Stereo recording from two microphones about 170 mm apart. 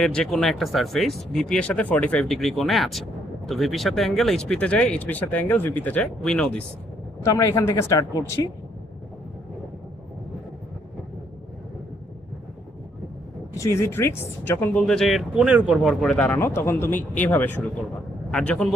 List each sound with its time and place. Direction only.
0.0 s speech: 5° left (ahead or behind)
7.2 s speech: 20° left (ahead or behind)
13.5 s speech: 20° left (ahead or behind)